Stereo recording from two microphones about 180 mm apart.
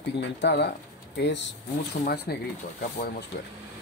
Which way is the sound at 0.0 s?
75° left (ahead or behind).